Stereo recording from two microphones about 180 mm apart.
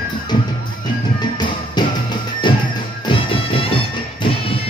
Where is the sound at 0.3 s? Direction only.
25° left (ahead or behind).